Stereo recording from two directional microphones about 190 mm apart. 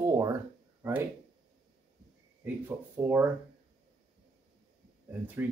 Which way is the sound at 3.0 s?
10° right (ahead or behind).